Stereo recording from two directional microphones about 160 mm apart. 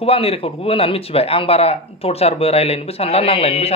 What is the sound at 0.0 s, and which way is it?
A man's voice, 35° left (ahead or behind).